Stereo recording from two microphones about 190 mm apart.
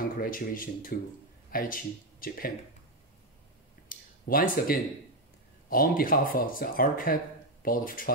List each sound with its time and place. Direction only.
0.0 s speech: 50° left (ahead or behind)
3.9 s a sound: 45° left (ahead or behind)
4.3 s speech: 50° left (ahead or behind)